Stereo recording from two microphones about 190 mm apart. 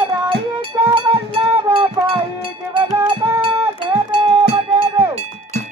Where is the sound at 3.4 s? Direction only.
30° right (ahead or behind).